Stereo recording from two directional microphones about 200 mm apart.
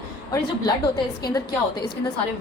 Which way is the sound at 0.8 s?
20° left (ahead or behind).